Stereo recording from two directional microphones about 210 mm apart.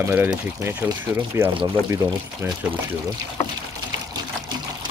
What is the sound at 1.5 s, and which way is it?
Speech, 20° right (ahead or behind).